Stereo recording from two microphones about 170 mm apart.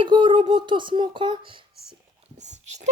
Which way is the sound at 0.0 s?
30° right (ahead or behind).